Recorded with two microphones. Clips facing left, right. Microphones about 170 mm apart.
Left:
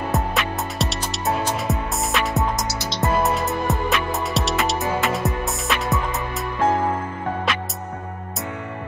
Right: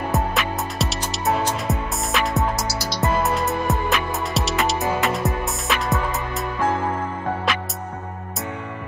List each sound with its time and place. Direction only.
0.1 s music: centre (ahead or behind)
2.8 s music: 20° left (ahead or behind)
3.3 s music: centre (ahead or behind)